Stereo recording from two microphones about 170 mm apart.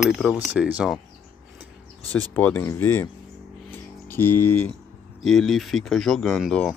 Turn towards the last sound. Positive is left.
turn(degrees=0)  # may be behind; listen again after turning